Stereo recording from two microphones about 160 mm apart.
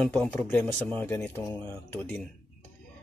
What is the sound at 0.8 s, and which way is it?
A man's voice, 10° left (ahead or behind).